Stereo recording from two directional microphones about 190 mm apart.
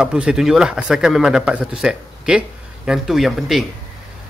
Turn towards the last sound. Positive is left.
turn(degrees=0)  # may be behind; listen again after turning